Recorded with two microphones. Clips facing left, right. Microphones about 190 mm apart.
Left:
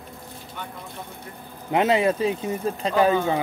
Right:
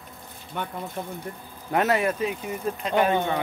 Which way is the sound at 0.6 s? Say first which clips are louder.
Right 5 dB; 60° right (ahead or behind).